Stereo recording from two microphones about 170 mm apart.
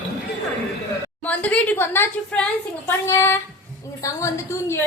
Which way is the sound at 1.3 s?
10° left (ahead or behind).